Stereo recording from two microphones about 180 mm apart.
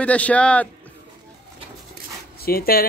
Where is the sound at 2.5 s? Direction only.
55° left (ahead or behind).